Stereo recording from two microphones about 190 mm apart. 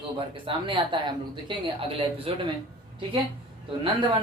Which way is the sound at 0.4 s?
25° right (ahead or behind).